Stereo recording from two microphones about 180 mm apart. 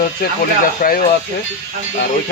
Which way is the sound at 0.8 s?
55° left (ahead or behind).